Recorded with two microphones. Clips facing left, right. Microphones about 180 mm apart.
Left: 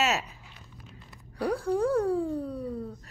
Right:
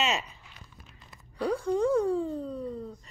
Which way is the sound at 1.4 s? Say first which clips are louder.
Even; 10° left (ahead or behind).